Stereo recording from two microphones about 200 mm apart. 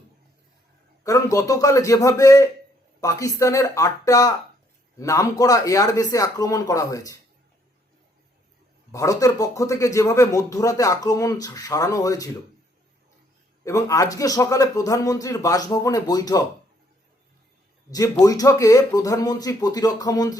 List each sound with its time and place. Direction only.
1.0 s speech: 15° left (ahead or behind)
8.9 s speech: 15° left (ahead or behind)
13.7 s speech: 15° left (ahead or behind)
17.9 s speech: 15° left (ahead or behind)